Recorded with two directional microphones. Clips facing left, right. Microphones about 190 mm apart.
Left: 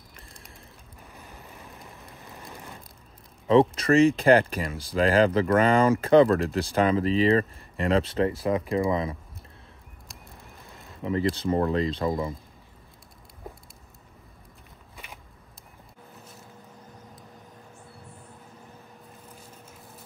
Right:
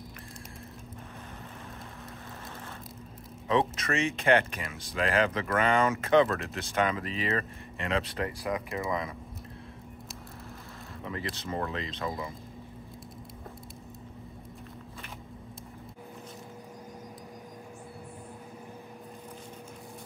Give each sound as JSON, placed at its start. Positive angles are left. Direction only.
{"t": 2.5, "sound": "a sound", "side_deg": 15}
{"t": 3.4, "sound": "speech", "side_deg": 30}
{"t": 11.1, "sound": "speech", "side_deg": 30}